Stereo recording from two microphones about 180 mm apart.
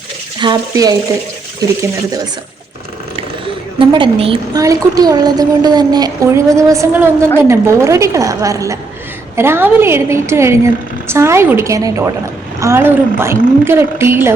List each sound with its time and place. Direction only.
0.3 s speech: 25° right (ahead or behind)
3.2 s a sound: 30° right (ahead or behind)
4.6 s a woman's voice: 20° right (ahead or behind)